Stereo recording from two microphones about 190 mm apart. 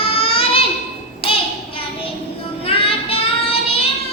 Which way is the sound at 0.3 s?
30° left (ahead or behind).